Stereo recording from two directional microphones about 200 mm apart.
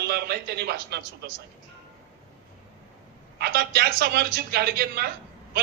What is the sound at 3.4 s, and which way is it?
A man's voice, 50° right (ahead or behind).